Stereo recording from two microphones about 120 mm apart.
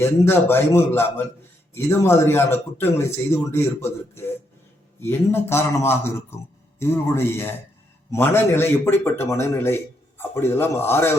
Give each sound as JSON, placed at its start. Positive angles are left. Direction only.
{"t": 0.0, "sound": "a man's voice", "side_deg": 20}